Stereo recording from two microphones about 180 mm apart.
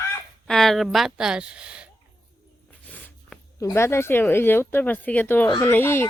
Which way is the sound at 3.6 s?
15° left (ahead or behind).